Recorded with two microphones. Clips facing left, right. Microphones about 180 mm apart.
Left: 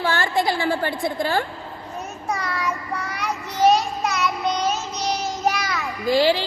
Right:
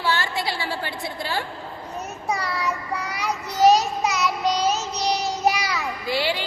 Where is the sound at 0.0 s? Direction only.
50° left (ahead or behind).